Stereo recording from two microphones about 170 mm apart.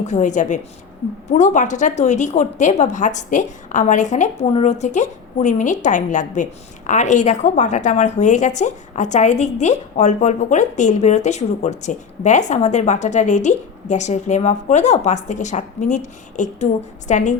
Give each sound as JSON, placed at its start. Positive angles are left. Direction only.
{"t": 0.0, "sound": "a woman's voice", "side_deg": 45}